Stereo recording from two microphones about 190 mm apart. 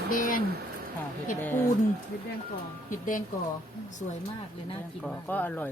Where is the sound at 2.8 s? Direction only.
45° left (ahead or behind).